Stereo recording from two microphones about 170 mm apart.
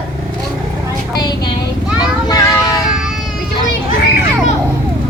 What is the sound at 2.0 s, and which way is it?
Vehicle, 25° left (ahead or behind).